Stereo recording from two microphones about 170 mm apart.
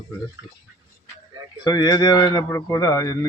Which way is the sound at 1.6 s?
25° left (ahead or behind).